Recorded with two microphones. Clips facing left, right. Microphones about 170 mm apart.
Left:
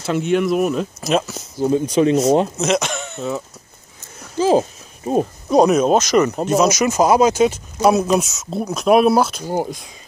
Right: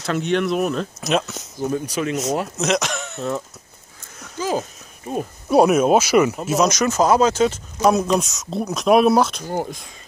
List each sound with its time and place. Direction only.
0.0 s speech: 5° left (ahead or behind)
1.6 s speech: 25° left (ahead or behind)
2.5 s speech: centre (ahead or behind)
4.4 s a sound: 30° left (ahead or behind)
5.5 s speech: 5° right (ahead or behind)
9.5 s speech: 15° left (ahead or behind)